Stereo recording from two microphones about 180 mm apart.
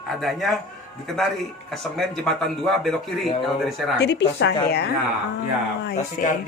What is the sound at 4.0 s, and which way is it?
Speech, 70° left (ahead or behind).